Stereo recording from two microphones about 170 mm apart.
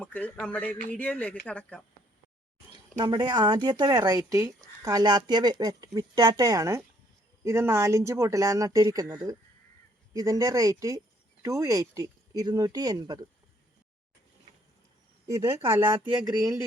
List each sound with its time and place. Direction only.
0.0 s speech: 10° left (ahead or behind)
3.0 s speech: 25° right (ahead or behind)
15.3 s speech: 15° right (ahead or behind)
15.8 s speech: 30° right (ahead or behind)